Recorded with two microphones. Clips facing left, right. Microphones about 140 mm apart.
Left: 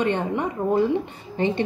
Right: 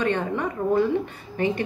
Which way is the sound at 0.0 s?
25° left (ahead or behind).